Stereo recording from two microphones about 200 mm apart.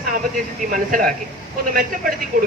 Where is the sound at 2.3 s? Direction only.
45° right (ahead or behind).